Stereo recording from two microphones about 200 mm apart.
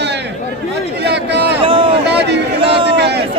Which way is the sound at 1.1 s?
60° right (ahead or behind).